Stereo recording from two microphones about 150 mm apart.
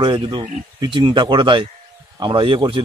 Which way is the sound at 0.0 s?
30° right (ahead or behind).